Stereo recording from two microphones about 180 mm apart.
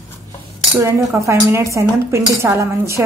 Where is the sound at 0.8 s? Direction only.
15° right (ahead or behind).